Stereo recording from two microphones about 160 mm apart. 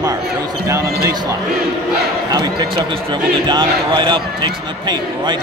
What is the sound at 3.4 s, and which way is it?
Speech, 30° right (ahead or behind).